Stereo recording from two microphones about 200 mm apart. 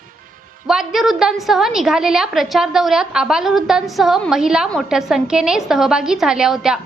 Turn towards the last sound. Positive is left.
turn(degrees=-5)  # may be behind; listen again after turning